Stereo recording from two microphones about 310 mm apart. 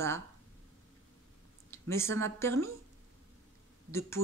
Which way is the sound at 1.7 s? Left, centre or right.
Centre.